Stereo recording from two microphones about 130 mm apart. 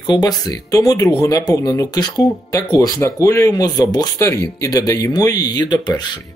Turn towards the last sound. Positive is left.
turn(degrees=30)  # may be behind; listen again after turning